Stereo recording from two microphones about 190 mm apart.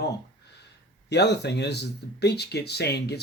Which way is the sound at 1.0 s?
65° left (ahead or behind).